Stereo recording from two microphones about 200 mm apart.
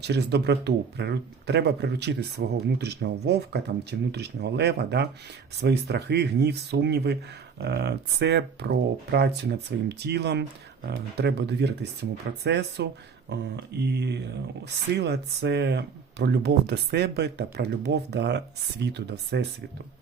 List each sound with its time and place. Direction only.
0.0 s speech: 55° right (ahead or behind)